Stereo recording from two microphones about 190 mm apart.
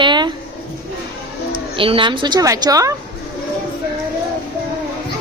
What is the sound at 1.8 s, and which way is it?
A woman's voice, 25° right (ahead or behind).